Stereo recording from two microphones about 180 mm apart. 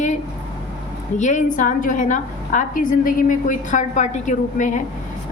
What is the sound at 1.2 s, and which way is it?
A woman's voice, 45° left (ahead or behind).